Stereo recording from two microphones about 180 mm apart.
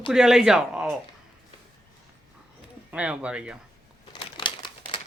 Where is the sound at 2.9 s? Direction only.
5° right (ahead or behind).